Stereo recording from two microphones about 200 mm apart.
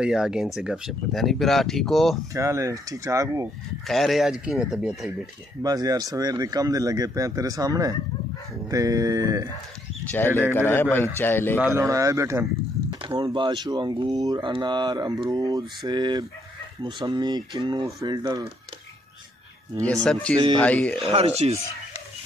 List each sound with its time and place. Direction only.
0.0 s speech: 5° right (ahead or behind)
2.3 s speech: 15° right (ahead or behind)
3.8 s speech: centre (ahead or behind)
5.6 s speech: 20° right (ahead or behind)
10.0 s a man's voice: 10° left (ahead or behind)
11.6 s speech: 15° right (ahead or behind)
19.8 s a man's voice: 5° left (ahead or behind)
21.0 s speech: 30° right (ahead or behind)